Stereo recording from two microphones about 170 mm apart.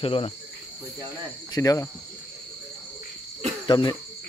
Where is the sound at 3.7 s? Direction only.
25° left (ahead or behind).